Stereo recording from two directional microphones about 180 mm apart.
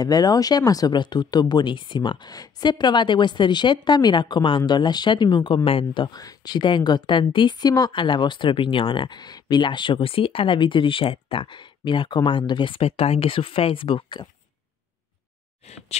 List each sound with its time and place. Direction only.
0.0 s speech: 20° left (ahead or behind)
15.6 s speech: 35° left (ahead or behind)